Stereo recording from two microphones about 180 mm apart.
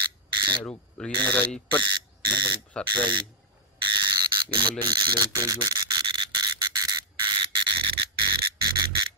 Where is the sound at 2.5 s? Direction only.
5° left (ahead or behind).